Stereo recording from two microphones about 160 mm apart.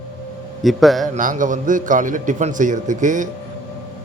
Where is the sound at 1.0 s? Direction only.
55° right (ahead or behind).